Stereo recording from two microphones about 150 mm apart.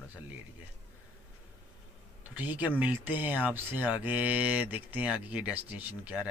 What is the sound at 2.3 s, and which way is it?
Cattle, 10° right (ahead or behind).